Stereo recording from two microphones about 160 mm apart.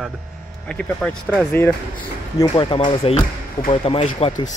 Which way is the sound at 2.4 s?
30° left (ahead or behind).